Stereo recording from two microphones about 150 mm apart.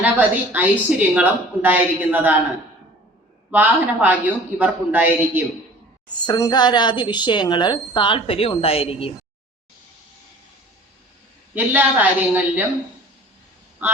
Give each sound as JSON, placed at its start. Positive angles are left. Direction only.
{"t": 0.0, "sound": "speech", "side_deg": -10}
{"t": 3.5, "sound": "speech", "side_deg": -10}
{"t": 6.2, "sound": "speech", "side_deg": 25}
{"t": 11.5, "sound": "speech", "side_deg": -10}
{"t": 13.8, "sound": "a sound", "side_deg": -10}